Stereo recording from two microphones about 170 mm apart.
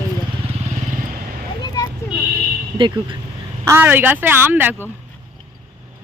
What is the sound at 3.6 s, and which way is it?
Speech, 15° right (ahead or behind).